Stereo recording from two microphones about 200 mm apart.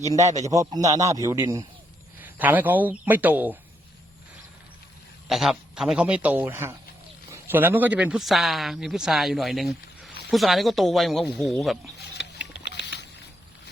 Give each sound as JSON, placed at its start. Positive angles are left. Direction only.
{"t": 0.4, "sound": "a man's voice", "side_deg": -15}
{"t": 5.3, "sound": "a man's voice", "side_deg": 0}
{"t": 12.7, "sound": "a sound", "side_deg": 55}